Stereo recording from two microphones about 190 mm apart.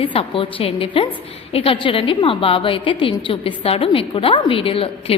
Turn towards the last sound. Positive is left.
turn(degrees=30)  # may be behind; listen again after turning